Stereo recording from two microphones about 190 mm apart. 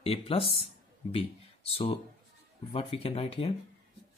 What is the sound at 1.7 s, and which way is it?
Speech, 30° left (ahead or behind).